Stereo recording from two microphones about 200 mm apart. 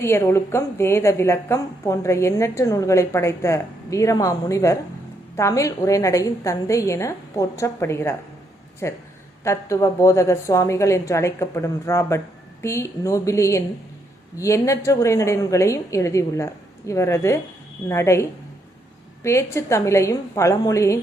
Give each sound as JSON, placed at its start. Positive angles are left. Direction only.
{"t": 0.0, "sound": "a woman's voice", "side_deg": 15}